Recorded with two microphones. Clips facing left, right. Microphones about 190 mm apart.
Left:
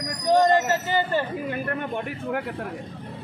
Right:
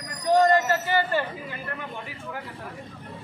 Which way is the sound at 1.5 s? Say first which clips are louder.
Left 8 dB; 55° left (ahead or behind).